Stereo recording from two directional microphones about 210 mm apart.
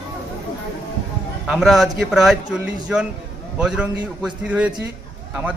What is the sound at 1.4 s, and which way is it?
Speech, centre (ahead or behind).